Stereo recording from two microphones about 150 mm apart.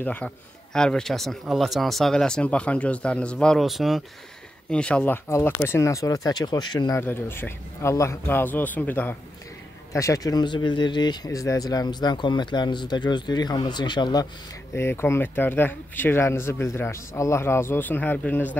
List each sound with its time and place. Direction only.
0.0 s speech: 10° left (ahead or behind); by 7.0 s 30° left (ahead or behind)
7.0 s speech: 15° left (ahead or behind); by 14.2 s 30° left (ahead or behind)
14.8 s speech: 15° left (ahead or behind)